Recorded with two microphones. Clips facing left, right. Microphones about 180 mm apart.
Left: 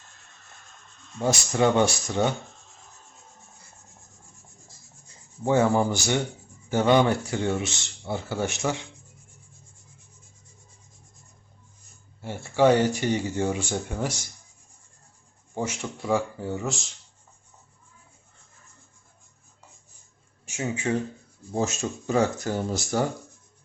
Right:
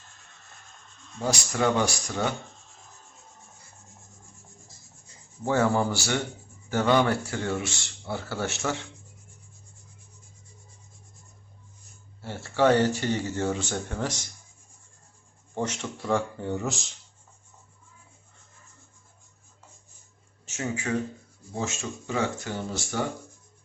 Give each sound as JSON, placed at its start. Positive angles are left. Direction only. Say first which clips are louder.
{"t": 1.2, "sound": "speech", "louder": "left 3 dB", "side_deg": 25}
{"t": 5.5, "sound": "speech", "louder": "left 3 dB", "side_deg": 15}
{"t": 12.2, "sound": "speech", "louder": "left 2 dB", "side_deg": 15}
{"t": 15.5, "sound": "speech", "louder": "even", "side_deg": 10}
{"t": 20.4, "sound": "speech", "louder": "left 2 dB", "side_deg": 15}
{"t": 21.5, "sound": "speech", "louder": "left 5 dB", "side_deg": 40}